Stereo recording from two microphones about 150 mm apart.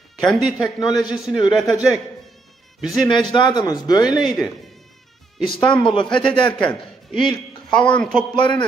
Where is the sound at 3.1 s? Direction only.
30° left (ahead or behind).